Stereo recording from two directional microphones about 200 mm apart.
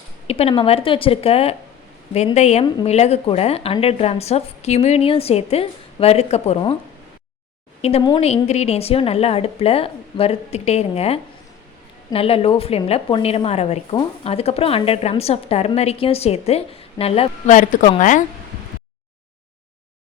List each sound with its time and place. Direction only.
0.3 s a woman's voice: 30° left (ahead or behind)
7.8 s a woman's voice: 30° left (ahead or behind)
17.5 s a woman's voice: 40° left (ahead or behind)